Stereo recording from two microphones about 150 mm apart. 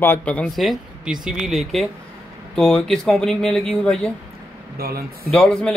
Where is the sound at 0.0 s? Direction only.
10° left (ahead or behind).